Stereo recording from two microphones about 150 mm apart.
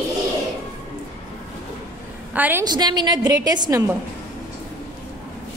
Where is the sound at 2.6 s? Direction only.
30° right (ahead or behind).